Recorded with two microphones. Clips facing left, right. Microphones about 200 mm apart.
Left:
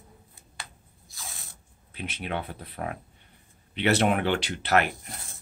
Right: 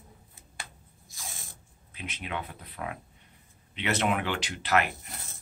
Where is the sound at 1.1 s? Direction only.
15° right (ahead or behind).